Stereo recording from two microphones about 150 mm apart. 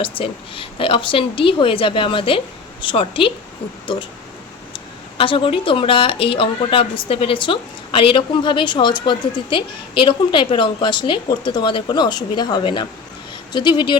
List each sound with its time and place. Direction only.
0.0 s a woman's voice: 35° left (ahead or behind)